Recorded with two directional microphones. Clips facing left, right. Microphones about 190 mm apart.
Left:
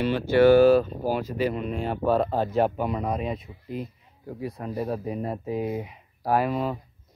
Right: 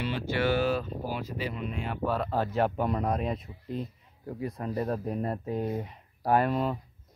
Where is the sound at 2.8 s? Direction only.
5° left (ahead or behind).